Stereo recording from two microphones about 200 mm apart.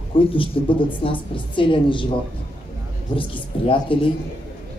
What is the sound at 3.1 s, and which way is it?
Speech, 25° left (ahead or behind).